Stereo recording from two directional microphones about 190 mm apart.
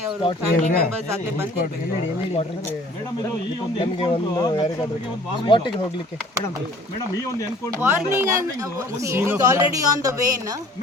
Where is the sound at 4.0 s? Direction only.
25° left (ahead or behind).